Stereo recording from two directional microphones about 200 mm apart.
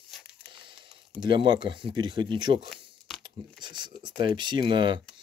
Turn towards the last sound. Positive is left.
turn(degrees=-25)  # may be behind; listen again after turning